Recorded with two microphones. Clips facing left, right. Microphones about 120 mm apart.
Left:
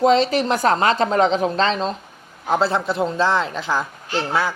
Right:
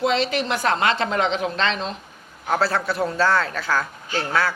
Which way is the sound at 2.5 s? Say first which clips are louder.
Left 2 dB; 25° left (ahead or behind).